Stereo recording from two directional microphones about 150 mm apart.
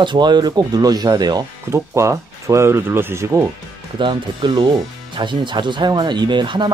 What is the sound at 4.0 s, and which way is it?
Speech, 30° right (ahead or behind).